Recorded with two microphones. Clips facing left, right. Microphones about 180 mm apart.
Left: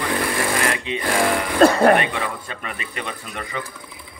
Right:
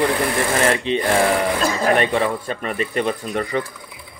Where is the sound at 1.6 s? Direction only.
60° left (ahead or behind).